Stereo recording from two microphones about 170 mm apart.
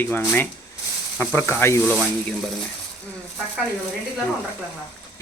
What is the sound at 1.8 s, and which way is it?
Speech, centre (ahead or behind).